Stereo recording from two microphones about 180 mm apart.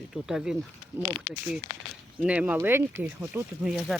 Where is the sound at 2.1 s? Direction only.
5° right (ahead or behind).